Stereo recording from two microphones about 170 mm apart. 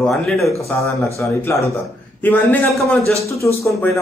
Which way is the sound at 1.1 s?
15° left (ahead or behind).